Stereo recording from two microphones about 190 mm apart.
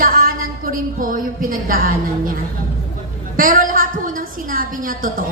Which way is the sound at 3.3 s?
45° right (ahead or behind).